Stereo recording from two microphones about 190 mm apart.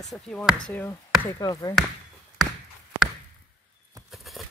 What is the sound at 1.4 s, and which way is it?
Speech, 20° left (ahead or behind).